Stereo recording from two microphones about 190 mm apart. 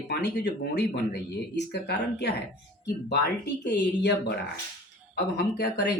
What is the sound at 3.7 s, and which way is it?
Speech, 60° left (ahead or behind).